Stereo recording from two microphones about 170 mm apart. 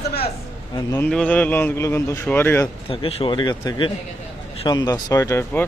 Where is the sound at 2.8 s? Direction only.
30° left (ahead or behind); by 5.6 s 15° left (ahead or behind).